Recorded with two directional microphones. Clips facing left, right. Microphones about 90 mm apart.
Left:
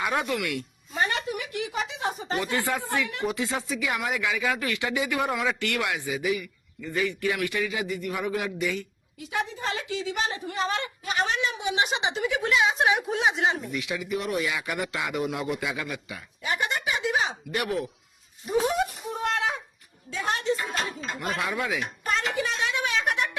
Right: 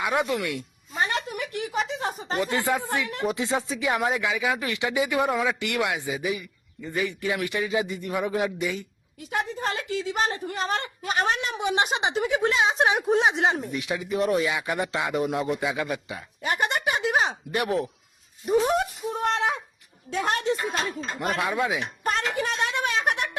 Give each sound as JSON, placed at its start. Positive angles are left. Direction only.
{"t": 0.0, "sound": "speech", "side_deg": -15}
{"t": 1.9, "sound": "a sound", "side_deg": -40}
{"t": 2.4, "sound": "a man's voice", "side_deg": -20}
{"t": 9.3, "sound": "a woman's voice", "side_deg": -50}
{"t": 12.3, "sound": "speech", "side_deg": -35}
{"t": 13.7, "sound": "a man's voice", "side_deg": -30}
{"t": 16.4, "sound": "a sound", "side_deg": -55}
{"t": 17.5, "sound": "a man's voice", "side_deg": -30}
{"t": 18.7, "sound": "a sound", "side_deg": -55}
{"t": 20.1, "sound": "a woman's voice", "side_deg": -55}
{"t": 21.0, "sound": "speech", "side_deg": -45}
{"t": 21.3, "sound": "a man's voice", "side_deg": -25}
{"t": 22.0, "sound": "a sound", "side_deg": -50}